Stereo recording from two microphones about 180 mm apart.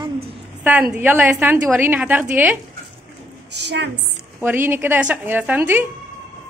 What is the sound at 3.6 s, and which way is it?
Speech, 70° right (ahead or behind).